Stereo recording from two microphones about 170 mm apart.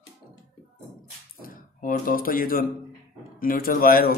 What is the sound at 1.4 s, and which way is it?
Speech, 55° left (ahead or behind).